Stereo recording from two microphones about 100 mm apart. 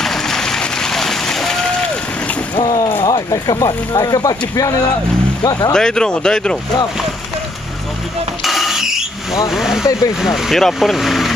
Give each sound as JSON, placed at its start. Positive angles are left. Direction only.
{"t": 0.0, "sound": "vehicle", "side_deg": 5}
{"t": 2.5, "sound": "boat", "side_deg": 45}
{"t": 3.1, "sound": "speech", "side_deg": 40}
{"t": 5.7, "sound": "speech", "side_deg": 5}
{"t": 8.5, "sound": "vehicle", "side_deg": 0}
{"t": 9.5, "sound": "speech", "side_deg": -5}